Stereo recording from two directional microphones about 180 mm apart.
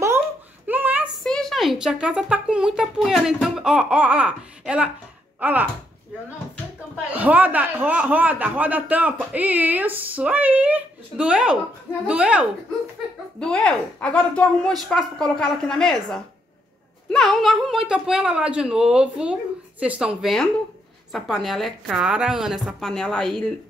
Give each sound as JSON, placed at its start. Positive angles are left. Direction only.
{"t": 0.7, "sound": "a sound", "side_deg": -10}
{"t": 1.2, "sound": "a man's voice", "side_deg": 5}
{"t": 7.2, "sound": "a man's voice", "side_deg": -10}
{"t": 13.4, "sound": "a woman's voice", "side_deg": 5}